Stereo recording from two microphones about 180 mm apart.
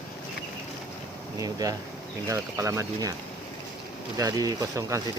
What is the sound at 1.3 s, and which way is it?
Speech, 20° right (ahead or behind).